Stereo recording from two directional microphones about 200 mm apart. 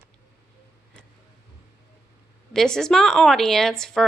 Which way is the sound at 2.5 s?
5° left (ahead or behind).